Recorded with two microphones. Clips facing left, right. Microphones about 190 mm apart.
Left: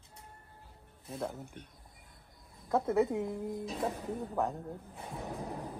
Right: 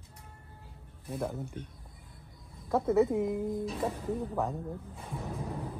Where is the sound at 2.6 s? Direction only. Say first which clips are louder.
Right 2 dB; 10° right (ahead or behind).